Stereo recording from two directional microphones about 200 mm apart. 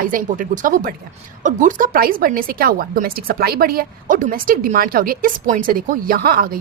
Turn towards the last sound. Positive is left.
turn(degrees=-45)  # may be behind; listen again after turning